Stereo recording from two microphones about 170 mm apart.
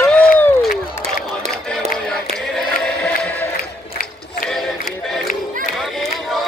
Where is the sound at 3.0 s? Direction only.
10° left (ahead or behind).